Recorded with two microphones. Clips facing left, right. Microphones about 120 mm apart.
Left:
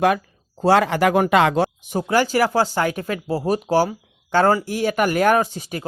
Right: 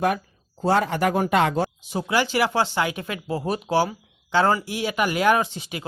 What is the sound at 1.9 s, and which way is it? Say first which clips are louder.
Speech: left 3 dB; 45° left (ahead or behind).